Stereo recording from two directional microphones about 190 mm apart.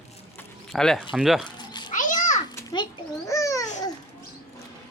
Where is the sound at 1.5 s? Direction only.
25° left (ahead or behind).